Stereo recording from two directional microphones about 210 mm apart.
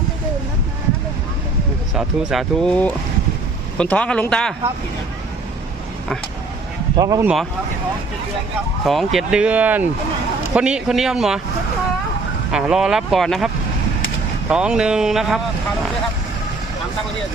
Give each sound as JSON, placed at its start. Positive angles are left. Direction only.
{"t": 2.0, "sound": "speech", "side_deg": 0}
{"t": 6.9, "sound": "speech", "side_deg": -15}
{"t": 8.8, "sound": "speech", "side_deg": 0}
{"t": 12.5, "sound": "speech", "side_deg": -5}
{"t": 14.5, "sound": "speech", "side_deg": -5}